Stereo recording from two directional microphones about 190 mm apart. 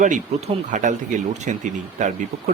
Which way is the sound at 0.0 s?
40° right (ahead or behind).